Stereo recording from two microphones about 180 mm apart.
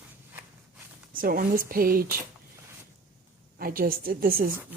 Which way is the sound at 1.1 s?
50° right (ahead or behind).